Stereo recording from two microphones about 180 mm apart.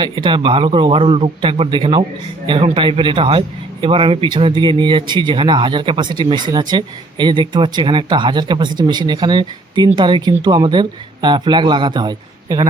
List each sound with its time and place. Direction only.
0.0 s a man's voice: 25° right (ahead or behind)